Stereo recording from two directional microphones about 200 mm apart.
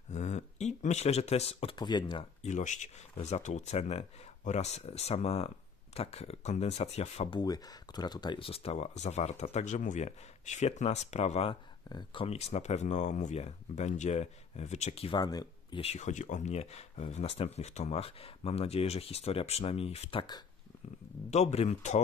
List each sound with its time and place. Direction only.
0.1 s speech: 35° left (ahead or behind)
2.4 s speech: 35° left (ahead or behind)
21.3 s speech: 35° left (ahead or behind)